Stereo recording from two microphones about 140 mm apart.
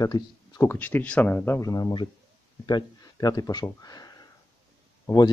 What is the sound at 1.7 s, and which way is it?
A man's voice, 30° left (ahead or behind).